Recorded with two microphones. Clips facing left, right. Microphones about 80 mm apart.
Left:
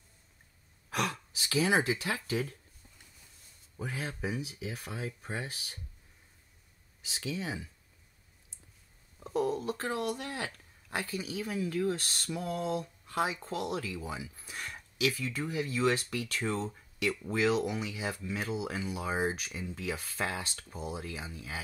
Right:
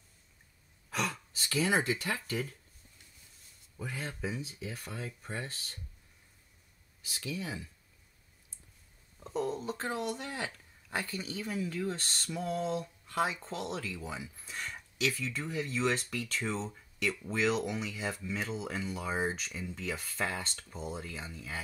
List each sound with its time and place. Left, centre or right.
1.0 s speech: centre
4.0 s speech: centre
4.4 s speech: left
4.9 s speech: centre
7.1 s speech: left
9.4 s speech: centre